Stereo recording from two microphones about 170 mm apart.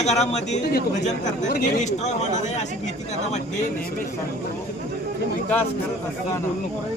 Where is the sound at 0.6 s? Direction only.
65° left (ahead or behind).